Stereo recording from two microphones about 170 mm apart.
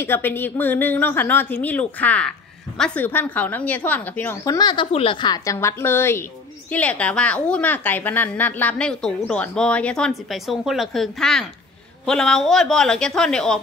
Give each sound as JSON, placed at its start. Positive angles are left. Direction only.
{"t": 0.0, "sound": "a woman's voice", "side_deg": 10}
{"t": 4.6, "sound": "a woman's voice", "side_deg": 25}